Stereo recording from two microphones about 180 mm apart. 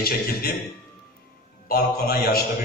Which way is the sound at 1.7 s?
55° left (ahead or behind).